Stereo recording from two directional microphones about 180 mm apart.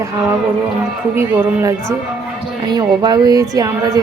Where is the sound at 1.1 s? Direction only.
15° right (ahead or behind).